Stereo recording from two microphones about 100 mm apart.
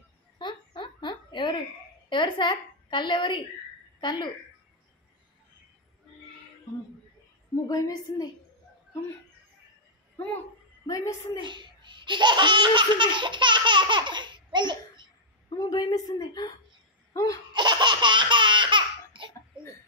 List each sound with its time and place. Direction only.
0.4 s giggle: 50° left (ahead or behind)
2.0 s a woman's voice: 50° left (ahead or behind)
7.6 s a woman's voice: 40° left (ahead or behind)
10.9 s a woman's voice: 35° left (ahead or behind)
11.4 s speech: 50° right (ahead or behind)
15.5 s a woman's voice: 40° left (ahead or behind)
17.1 s laughter: 35° left (ahead or behind)
17.6 s laughter: 50° right (ahead or behind)